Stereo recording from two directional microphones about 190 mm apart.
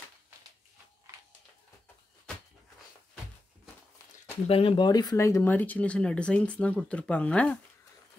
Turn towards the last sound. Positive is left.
turn(degrees=5)  # may be behind; listen again after turning